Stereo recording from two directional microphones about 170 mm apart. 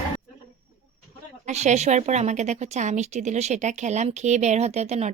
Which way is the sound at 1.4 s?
45° right (ahead or behind).